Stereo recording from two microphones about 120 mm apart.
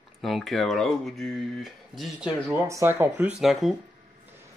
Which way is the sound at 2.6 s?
20° right (ahead or behind).